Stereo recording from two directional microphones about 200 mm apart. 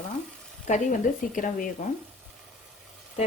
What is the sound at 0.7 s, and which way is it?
Speech, 35° left (ahead or behind).